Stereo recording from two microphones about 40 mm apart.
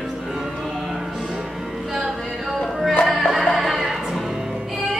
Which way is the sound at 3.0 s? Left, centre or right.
Centre.